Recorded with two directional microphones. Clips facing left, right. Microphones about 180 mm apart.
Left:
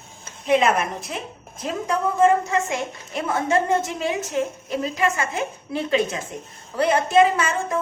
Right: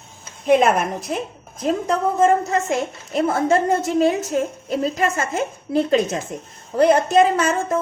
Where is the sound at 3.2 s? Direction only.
35° right (ahead or behind).